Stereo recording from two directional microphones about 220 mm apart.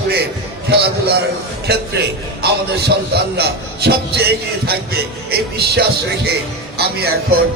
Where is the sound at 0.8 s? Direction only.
45° right (ahead or behind).